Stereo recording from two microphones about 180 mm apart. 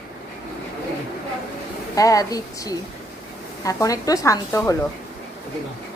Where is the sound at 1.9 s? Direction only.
20° left (ahead or behind).